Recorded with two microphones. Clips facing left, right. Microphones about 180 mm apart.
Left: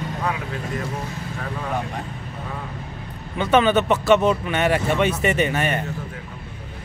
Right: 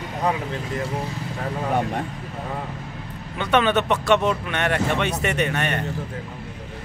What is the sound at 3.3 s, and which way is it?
Speech, centre (ahead or behind).